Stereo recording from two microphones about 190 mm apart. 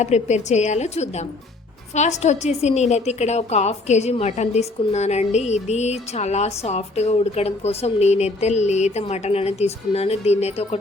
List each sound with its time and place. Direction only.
0.0 s a woman's voice: 35° left (ahead or behind)